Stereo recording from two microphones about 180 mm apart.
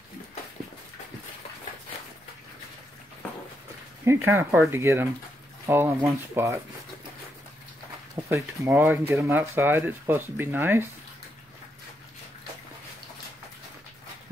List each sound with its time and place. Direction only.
4.0 s speech: 15° right (ahead or behind)
8.3 s speech: 10° right (ahead or behind)